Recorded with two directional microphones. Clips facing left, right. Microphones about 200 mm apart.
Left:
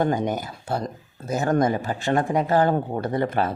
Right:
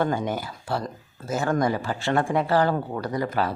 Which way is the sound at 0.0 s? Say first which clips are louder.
Left 2 dB; 20° left (ahead or behind).